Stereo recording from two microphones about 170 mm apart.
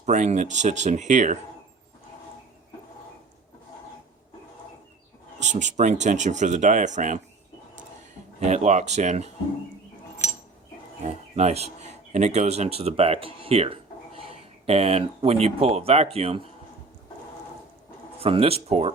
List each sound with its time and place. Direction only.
0.0 s speech: 45° right (ahead or behind)
5.4 s speech: 45° right (ahead or behind)
8.4 s speech: 45° right (ahead or behind)
11.0 s speech: 40° right (ahead or behind)
18.2 s speech: 35° right (ahead or behind)